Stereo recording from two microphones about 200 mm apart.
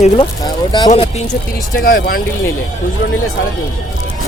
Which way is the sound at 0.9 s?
35° left (ahead or behind).